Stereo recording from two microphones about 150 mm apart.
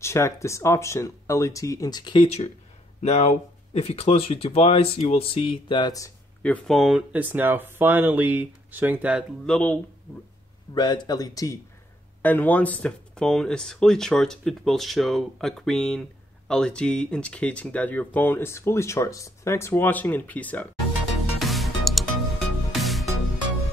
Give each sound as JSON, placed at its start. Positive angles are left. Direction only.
{"t": 0.0, "sound": "speech", "side_deg": 20}
{"t": 2.2, "sound": "speech", "side_deg": 45}
{"t": 6.4, "sound": "speech", "side_deg": 5}
{"t": 9.5, "sound": "speech", "side_deg": 10}
{"t": 10.7, "sound": "speech", "side_deg": 30}
{"t": 12.2, "sound": "speech", "side_deg": 10}
{"t": 21.4, "sound": "music", "side_deg": 0}